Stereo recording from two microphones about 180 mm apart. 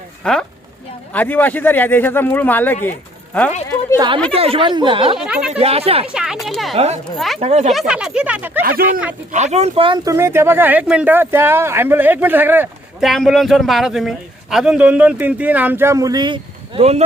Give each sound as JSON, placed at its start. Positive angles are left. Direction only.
{"t": 0.2, "sound": "speech", "side_deg": 5}
{"t": 3.9, "sound": "speech", "side_deg": -25}
{"t": 5.1, "sound": "speech", "side_deg": -5}
{"t": 5.5, "sound": "speech", "side_deg": -35}
{"t": 6.1, "sound": "speech", "side_deg": -5}
{"t": 6.7, "sound": "speech", "side_deg": -35}
{"t": 7.7, "sound": "speech", "side_deg": -5}
{"t": 9.3, "sound": "speech", "side_deg": -40}